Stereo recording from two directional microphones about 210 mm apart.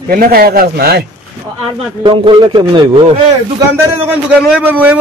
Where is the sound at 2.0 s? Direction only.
25° right (ahead or behind).